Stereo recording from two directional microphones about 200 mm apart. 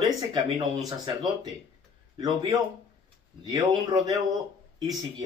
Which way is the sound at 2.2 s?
20° right (ahead or behind).